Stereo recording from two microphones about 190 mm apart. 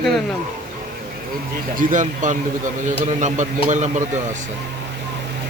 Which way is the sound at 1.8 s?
40° right (ahead or behind).